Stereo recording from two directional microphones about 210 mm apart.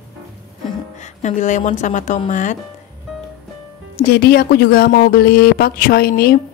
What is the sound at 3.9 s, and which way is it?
Speech, 50° left (ahead or behind).